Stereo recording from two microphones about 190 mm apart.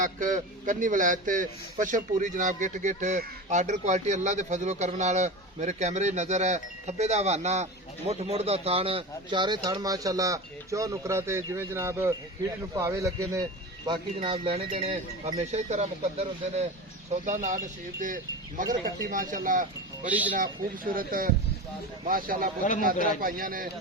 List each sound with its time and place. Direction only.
0.0 s a man's voice: 45° right (ahead or behind)
18.0 s speech: 45° right (ahead or behind)
20.1 s speech: 10° right (ahead or behind)
20.9 s speech: 50° right (ahead or behind)